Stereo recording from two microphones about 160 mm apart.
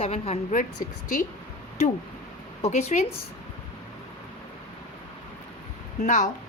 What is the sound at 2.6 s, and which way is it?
Speech, 45° left (ahead or behind).